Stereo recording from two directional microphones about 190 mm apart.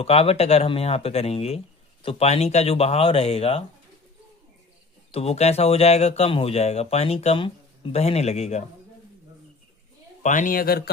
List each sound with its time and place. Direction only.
0.0 s speech: 30° left (ahead or behind)
5.1 s speech: 35° left (ahead or behind)
10.2 s speech: 45° left (ahead or behind)